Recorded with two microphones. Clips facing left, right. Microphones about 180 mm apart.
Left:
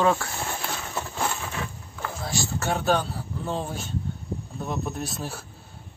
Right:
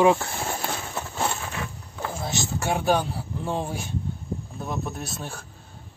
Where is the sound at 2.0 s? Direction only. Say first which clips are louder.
Right 1 dB; 20° right (ahead or behind).